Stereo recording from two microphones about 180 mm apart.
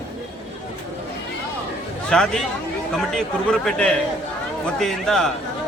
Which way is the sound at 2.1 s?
5° left (ahead or behind).